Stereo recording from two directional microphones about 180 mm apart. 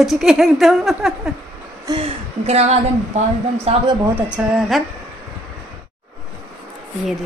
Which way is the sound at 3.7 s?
35° right (ahead or behind).